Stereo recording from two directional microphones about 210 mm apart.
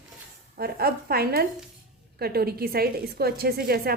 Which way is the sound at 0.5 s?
45° right (ahead or behind).